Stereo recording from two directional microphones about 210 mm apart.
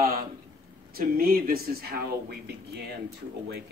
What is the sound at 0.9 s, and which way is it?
A man's voice, 45° right (ahead or behind).